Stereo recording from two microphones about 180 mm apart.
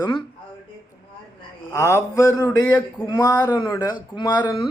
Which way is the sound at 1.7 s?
15° left (ahead or behind).